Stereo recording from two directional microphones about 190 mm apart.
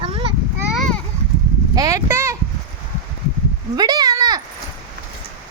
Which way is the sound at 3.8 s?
20° right (ahead or behind).